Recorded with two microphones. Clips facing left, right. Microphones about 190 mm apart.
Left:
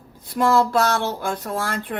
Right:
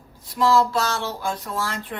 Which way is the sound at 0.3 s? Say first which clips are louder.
Left 1 dB; 55° left (ahead or behind).